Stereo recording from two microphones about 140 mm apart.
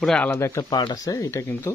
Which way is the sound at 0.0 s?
5° left (ahead or behind).